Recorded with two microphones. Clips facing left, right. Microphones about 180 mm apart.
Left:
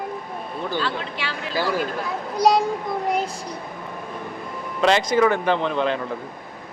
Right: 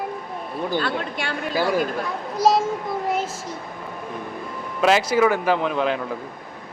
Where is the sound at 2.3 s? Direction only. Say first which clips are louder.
Left 1 dB; centre (ahead or behind).